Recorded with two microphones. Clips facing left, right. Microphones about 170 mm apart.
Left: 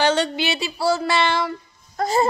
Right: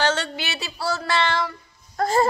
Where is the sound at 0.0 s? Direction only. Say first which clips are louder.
Left 4 dB; 15° left (ahead or behind).